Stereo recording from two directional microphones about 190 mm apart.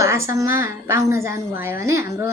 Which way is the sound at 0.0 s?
15° right (ahead or behind).